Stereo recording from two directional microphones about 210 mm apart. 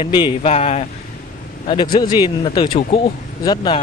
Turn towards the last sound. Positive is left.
turn(degrees=20)  # may be behind; listen again after turning